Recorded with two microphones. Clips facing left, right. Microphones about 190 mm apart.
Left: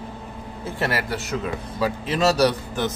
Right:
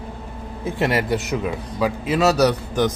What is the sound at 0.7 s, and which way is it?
Speech, 20° right (ahead or behind).